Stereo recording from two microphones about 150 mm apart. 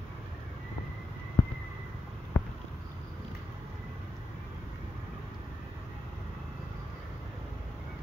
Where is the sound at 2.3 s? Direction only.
10° left (ahead or behind).